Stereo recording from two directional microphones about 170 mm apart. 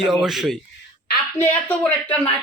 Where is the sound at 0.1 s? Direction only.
Centre (ahead or behind).